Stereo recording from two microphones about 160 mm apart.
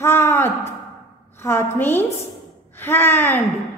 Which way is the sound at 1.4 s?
15° left (ahead or behind).